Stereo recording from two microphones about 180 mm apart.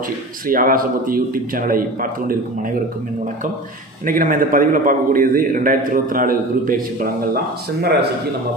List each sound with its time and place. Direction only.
0.4 s a man's voice: 50° right (ahead or behind)
4.0 s a man's voice: 50° right (ahead or behind)